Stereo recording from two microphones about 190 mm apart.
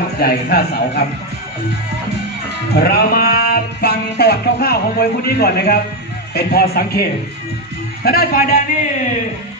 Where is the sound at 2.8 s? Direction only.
55° left (ahead or behind).